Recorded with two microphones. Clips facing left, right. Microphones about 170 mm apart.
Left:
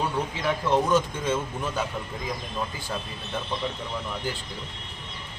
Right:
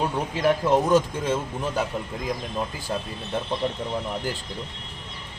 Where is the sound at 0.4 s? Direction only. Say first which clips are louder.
Right 4 dB; 40° right (ahead or behind).